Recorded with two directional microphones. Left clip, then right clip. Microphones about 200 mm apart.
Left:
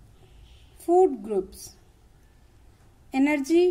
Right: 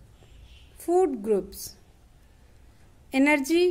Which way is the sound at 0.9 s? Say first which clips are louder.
Left 2 dB; 35° right (ahead or behind).